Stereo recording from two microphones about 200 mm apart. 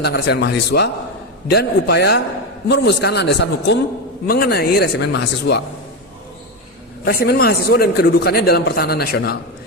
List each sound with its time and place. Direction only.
0.0 s a man's voice: 55° left (ahead or behind)
7.0 s a man's voice: 50° left (ahead or behind)